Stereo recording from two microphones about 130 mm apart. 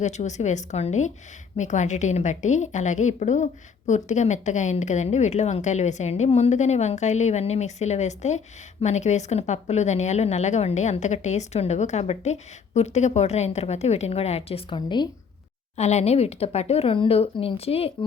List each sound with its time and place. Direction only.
0.0 s a woman's voice: 65° left (ahead or behind); by 15.0 s 35° left (ahead or behind)
15.8 s speech: 60° left (ahead or behind)